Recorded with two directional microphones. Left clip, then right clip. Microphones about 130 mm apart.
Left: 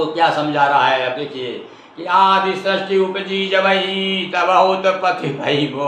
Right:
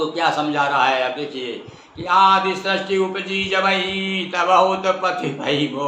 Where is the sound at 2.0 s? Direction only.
25° right (ahead or behind).